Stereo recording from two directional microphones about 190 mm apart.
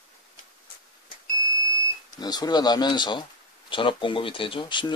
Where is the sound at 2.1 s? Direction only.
20° left (ahead or behind).